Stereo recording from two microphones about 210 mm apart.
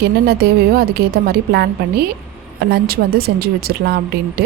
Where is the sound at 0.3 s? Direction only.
45° right (ahead or behind).